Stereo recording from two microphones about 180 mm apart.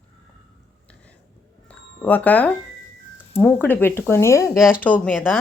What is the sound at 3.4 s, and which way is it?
A woman's voice, 10° left (ahead or behind).